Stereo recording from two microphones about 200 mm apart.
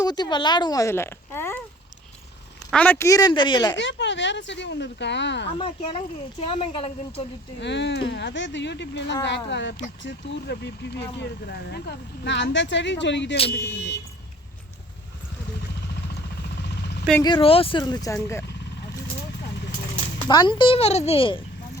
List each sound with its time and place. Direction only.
0.0 s speech: 20° left (ahead or behind)
2.7 s speech: 5° left (ahead or behind)
3.8 s speech: 60° left (ahead or behind)
5.5 s speech: 25° left (ahead or behind)
7.6 s speech: 60° left (ahead or behind)
17.2 s speech: 25° left (ahead or behind)
20.2 s speech: 20° left (ahead or behind)